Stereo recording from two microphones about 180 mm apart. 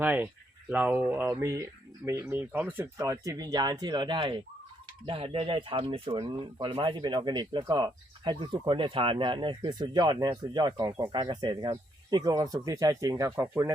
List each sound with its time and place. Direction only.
0.0 s speech: 10° right (ahead or behind)